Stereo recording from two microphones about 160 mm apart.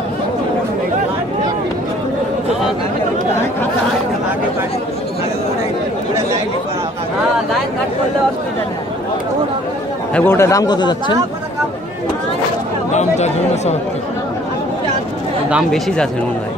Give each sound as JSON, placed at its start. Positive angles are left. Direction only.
{"t": 10.1, "sound": "a man's voice", "side_deg": 15}
{"t": 12.9, "sound": "speech", "side_deg": 45}
{"t": 15.5, "sound": "speech", "side_deg": 5}